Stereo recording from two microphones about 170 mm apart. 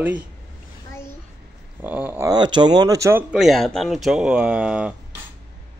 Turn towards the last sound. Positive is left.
turn(degrees=-5)  # may be behind; listen again after turning